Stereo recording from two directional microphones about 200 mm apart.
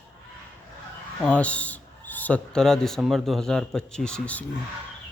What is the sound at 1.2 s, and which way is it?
Speech, 5° left (ahead or behind).